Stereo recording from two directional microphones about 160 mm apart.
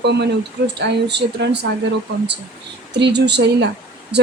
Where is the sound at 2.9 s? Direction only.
90° right.